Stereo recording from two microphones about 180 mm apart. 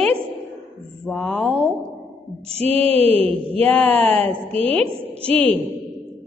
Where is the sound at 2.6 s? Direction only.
35° right (ahead or behind).